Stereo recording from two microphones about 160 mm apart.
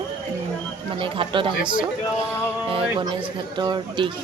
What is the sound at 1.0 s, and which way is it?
Speech, 35° right (ahead or behind).